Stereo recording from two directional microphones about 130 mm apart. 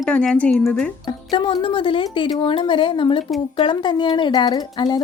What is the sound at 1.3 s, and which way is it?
Speech, 40° left (ahead or behind).